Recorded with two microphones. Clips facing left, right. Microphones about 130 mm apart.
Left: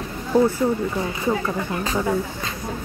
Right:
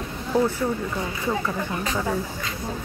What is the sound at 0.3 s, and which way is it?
Speech, 10° left (ahead or behind).